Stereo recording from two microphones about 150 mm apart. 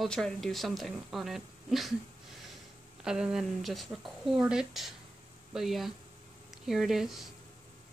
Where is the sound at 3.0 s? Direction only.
5° right (ahead or behind).